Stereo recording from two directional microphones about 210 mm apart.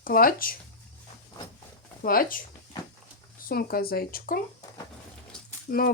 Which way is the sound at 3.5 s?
45° left (ahead or behind).